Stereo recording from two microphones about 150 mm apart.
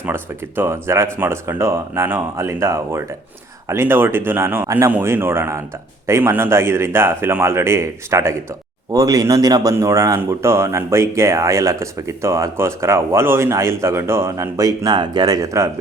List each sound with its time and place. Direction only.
0.0 s a man's voice: 15° right (ahead or behind)